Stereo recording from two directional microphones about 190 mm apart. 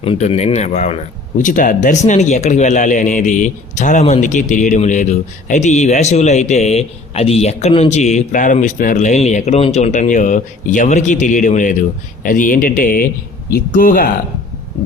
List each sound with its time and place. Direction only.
0.0 s speech: 35° left (ahead or behind)